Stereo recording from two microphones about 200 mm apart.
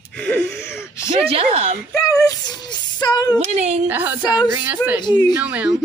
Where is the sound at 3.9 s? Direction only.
10° right (ahead or behind).